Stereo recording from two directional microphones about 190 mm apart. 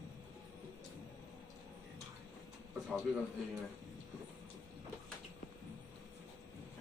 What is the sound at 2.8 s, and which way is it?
Speech, centre (ahead or behind).